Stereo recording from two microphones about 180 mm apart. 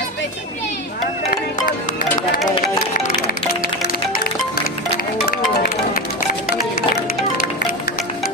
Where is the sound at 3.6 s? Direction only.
55° left (ahead or behind).